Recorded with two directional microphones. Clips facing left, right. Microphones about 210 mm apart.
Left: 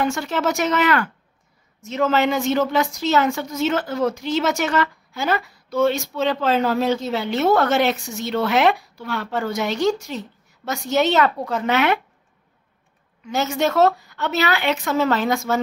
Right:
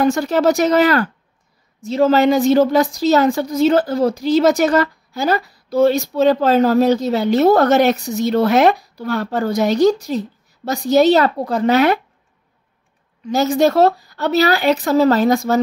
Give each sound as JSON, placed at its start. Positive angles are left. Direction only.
{"t": 0.0, "sound": "a woman's voice", "side_deg": -40}
{"t": 13.2, "sound": "a woman's voice", "side_deg": -35}